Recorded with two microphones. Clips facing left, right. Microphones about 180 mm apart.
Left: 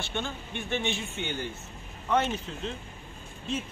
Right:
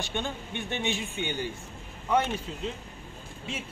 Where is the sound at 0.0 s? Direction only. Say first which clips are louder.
Right 1 dB; 15° right (ahead or behind).